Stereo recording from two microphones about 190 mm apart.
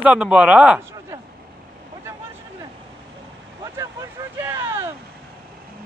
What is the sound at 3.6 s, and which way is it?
Vehicle, 15° right (ahead or behind).